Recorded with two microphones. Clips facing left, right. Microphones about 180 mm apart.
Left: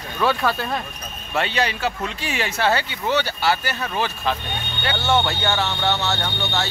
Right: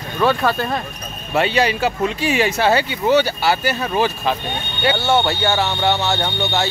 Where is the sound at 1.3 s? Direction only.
10° right (ahead or behind).